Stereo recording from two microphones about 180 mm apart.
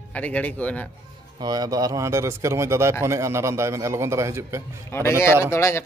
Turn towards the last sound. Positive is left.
turn(degrees=15)  # may be behind; listen again after turning